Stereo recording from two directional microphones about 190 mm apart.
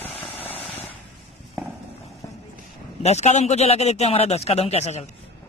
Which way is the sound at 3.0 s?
35° left (ahead or behind).